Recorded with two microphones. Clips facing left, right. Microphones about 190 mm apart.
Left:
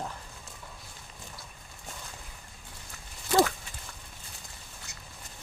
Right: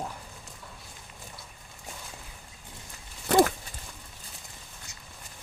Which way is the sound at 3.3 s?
60° right (ahead or behind).